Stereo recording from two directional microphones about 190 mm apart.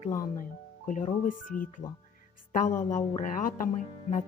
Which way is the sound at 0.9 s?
45° left (ahead or behind).